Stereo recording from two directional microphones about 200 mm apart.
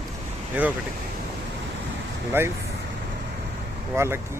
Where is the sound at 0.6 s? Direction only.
10° right (ahead or behind).